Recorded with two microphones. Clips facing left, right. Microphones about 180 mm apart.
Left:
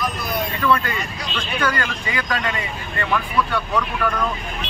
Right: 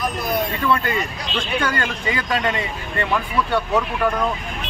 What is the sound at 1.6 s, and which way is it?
Speech, 25° right (ahead or behind).